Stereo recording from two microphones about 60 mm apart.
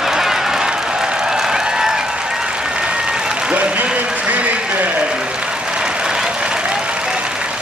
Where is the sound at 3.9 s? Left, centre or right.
Right.